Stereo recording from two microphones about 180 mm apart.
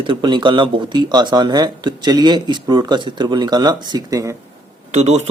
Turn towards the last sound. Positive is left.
turn(degrees=-40)  # may be behind; listen again after turning